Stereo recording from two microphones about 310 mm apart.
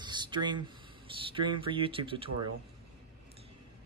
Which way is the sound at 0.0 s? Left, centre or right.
Centre.